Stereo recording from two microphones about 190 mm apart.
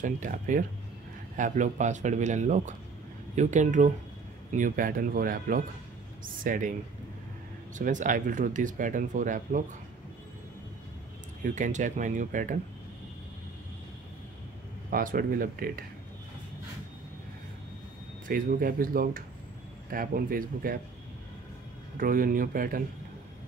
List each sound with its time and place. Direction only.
0.0 s a man's voice: 45° right (ahead or behind)
7.7 s speech: 40° right (ahead or behind)
11.4 s a man's voice: 40° right (ahead or behind)
14.9 s speech: 50° right (ahead or behind)
18.2 s speech: 45° right (ahead or behind)
21.9 s speech: 50° right (ahead or behind)